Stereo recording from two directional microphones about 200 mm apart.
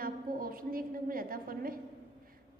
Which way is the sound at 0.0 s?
45° right (ahead or behind).